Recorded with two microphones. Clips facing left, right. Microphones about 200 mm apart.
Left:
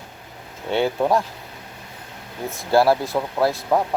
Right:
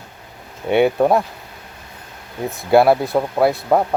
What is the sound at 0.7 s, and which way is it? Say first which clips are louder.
Speech: right 5 dB; 55° right (ahead or behind).